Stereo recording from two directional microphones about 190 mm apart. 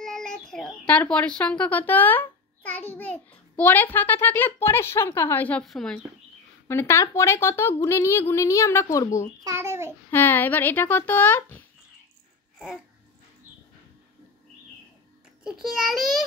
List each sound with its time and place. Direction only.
0.0 s a woman's voice: centre (ahead or behind)
9.4 s a child's voice: 15° right (ahead or behind)
10.1 s a woman's voice: 10° left (ahead or behind)
12.5 s babbling: centre (ahead or behind)
15.4 s a child's voice: centre (ahead or behind)